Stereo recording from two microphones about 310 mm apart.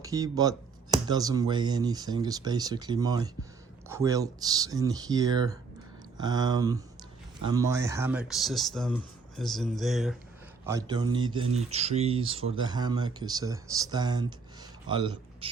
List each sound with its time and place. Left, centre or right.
0.0 s speech: centre
10.7 s a man's voice: centre